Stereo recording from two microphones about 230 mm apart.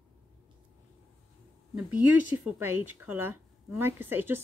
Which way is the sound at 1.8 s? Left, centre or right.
Centre.